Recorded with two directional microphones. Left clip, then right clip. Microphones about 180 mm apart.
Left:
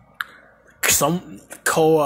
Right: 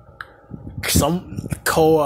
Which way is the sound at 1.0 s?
5° right (ahead or behind).